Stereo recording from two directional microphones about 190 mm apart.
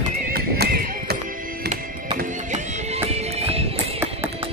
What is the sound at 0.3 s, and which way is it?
Music, 50° right (ahead or behind).